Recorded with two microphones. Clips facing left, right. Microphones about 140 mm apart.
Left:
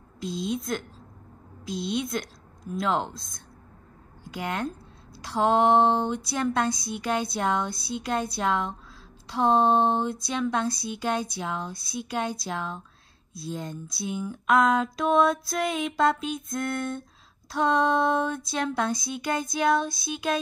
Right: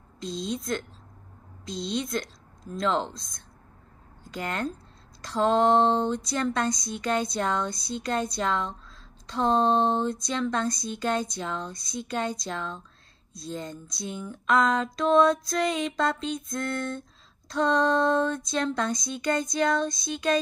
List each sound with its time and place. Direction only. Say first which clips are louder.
0.2 s speech: left 2 dB; 5° left (ahead or behind)
5.8 s speech: even; 10° left (ahead or behind)
6.7 s speech: even; 60° left (ahead or behind)
7.0 s speech: right 1 dB; 5° left (ahead or behind)
7.7 s speech: left 1 dB; 60° left (ahead or behind)
8.3 s speech: left 1 dB; 5° left (ahead or behind)